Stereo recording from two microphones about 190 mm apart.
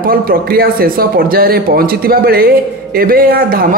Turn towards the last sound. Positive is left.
turn(degrees=-50)  # may be behind; listen again after turning